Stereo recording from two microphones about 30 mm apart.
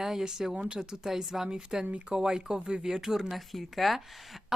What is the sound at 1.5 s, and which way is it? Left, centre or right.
Speech, right.